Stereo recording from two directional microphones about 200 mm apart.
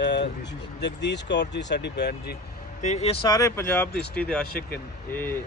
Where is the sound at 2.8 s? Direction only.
35° left (ahead or behind).